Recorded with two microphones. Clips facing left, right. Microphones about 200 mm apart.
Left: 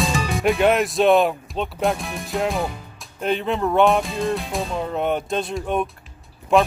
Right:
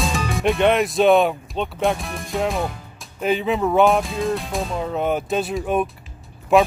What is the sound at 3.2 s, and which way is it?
Speech, centre (ahead or behind).